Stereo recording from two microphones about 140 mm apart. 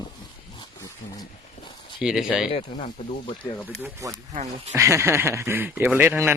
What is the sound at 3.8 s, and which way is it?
Speech, 20° right (ahead or behind).